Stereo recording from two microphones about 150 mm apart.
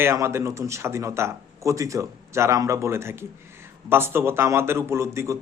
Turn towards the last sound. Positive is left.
turn(degrees=-20)  # may be behind; listen again after turning